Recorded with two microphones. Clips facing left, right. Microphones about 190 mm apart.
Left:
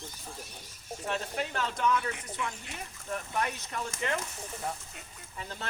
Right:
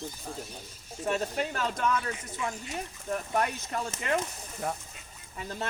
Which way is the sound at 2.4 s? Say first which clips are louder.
Right 3 dB; 60° left (ahead or behind).